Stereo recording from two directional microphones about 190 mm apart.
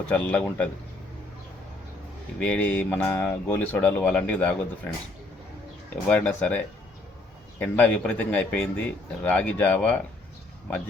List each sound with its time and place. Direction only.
0.0 s speech: 10° left (ahead or behind)
2.4 s speech: 10° left (ahead or behind)
6.1 s speech: 5° left (ahead or behind)
7.6 s speech: 5° left (ahead or behind)